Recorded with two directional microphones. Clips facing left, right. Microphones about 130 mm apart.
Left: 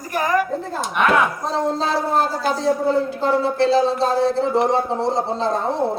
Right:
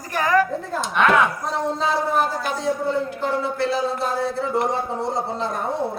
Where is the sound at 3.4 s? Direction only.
30° left (ahead or behind).